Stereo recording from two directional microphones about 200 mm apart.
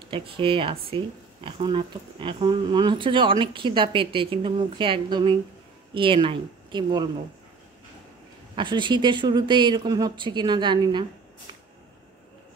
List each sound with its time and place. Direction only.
0.1 s speech: 25° right (ahead or behind)
8.5 s speech: 25° right (ahead or behind)